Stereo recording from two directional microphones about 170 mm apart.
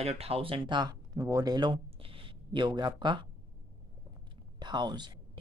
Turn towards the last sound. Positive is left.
turn(degrees=-25)  # may be behind; listen again after turning